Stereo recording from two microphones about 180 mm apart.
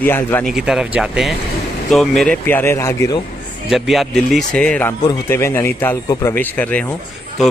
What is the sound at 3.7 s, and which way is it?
Speech, centre (ahead or behind).